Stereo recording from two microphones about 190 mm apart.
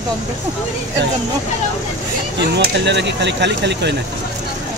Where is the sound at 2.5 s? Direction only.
65° right (ahead or behind).